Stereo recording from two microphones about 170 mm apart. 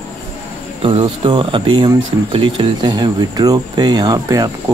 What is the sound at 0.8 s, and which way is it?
Speech, 35° right (ahead or behind).